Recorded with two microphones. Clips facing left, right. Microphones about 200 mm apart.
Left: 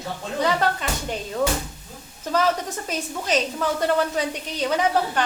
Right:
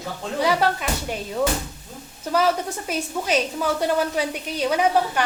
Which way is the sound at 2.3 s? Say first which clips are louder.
Right 1 dB; 10° right (ahead or behind).